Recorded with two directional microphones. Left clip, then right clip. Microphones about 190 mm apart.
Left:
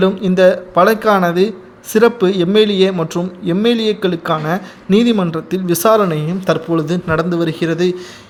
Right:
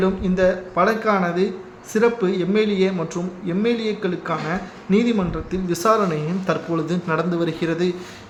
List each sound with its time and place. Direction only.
0.0 s a man's voice: 50° left (ahead or behind)